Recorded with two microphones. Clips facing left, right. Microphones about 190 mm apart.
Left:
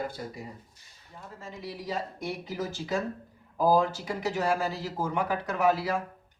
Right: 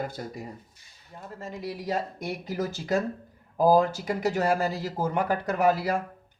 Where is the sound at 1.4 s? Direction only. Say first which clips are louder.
Right 4 dB; 45° right (ahead or behind).